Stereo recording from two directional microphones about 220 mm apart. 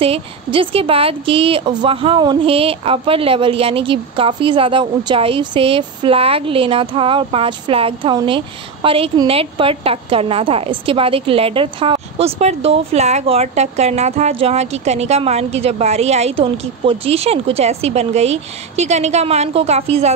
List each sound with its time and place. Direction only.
0.0 s a woman's voice: 25° right (ahead or behind)